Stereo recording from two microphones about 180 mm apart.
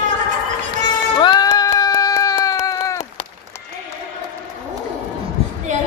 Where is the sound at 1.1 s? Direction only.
25° left (ahead or behind).